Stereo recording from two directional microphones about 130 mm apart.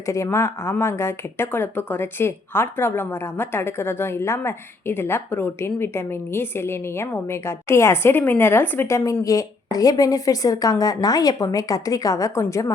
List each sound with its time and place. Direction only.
0.0 s a woman's voice: 20° left (ahead or behind)